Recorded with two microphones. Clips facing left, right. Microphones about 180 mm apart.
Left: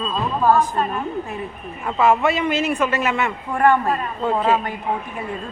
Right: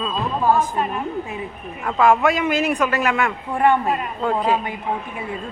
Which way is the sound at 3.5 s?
15° right (ahead or behind).